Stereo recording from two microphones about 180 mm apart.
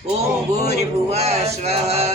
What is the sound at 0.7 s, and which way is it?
Speech, 35° right (ahead or behind).